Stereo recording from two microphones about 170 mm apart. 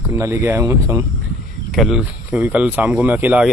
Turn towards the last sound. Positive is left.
turn(degrees=-10)  # may be behind; listen again after turning